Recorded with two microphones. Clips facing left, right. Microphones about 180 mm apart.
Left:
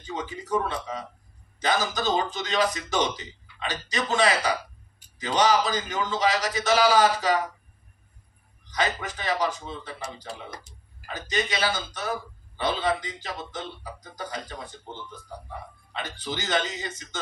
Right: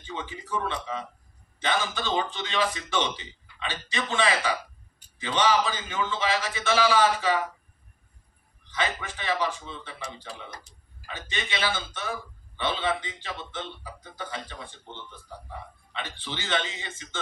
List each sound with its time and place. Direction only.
0.0 s speech: 40° left (ahead or behind)
8.6 s speech: 40° left (ahead or behind)